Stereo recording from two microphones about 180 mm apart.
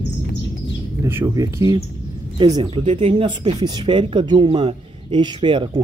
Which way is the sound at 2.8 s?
35° right (ahead or behind).